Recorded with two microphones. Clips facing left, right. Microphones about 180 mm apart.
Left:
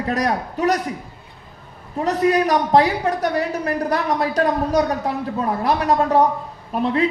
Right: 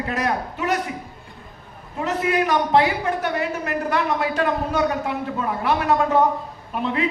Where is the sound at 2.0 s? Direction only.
40° left (ahead or behind).